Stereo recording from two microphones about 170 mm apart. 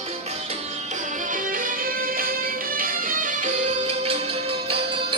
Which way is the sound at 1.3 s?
55° right (ahead or behind).